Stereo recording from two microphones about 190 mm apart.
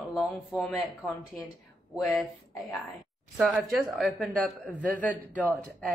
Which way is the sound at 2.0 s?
Centre (ahead or behind).